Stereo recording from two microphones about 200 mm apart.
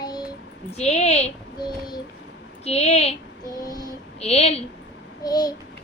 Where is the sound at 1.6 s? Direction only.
20° left (ahead or behind).